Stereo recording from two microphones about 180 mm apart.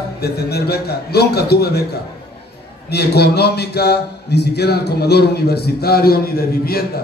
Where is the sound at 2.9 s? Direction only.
65° left (ahead or behind).